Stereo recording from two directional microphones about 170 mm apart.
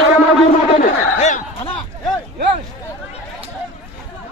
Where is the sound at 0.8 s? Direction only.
45° left (ahead or behind).